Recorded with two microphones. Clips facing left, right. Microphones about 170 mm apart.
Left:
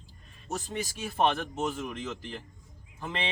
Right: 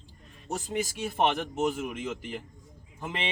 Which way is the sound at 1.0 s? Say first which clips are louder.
Left 1 dB; 20° right (ahead or behind).